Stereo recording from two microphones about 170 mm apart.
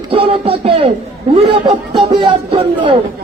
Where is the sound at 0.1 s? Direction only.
35° right (ahead or behind).